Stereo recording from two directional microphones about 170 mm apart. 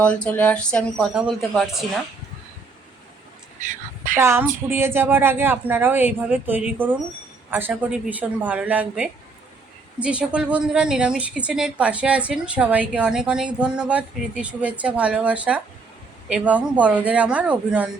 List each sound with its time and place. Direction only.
0.0 s speech: 5° left (ahead or behind)
3.6 s speech: 50° right (ahead or behind)
4.2 s a woman's voice: 15° right (ahead or behind)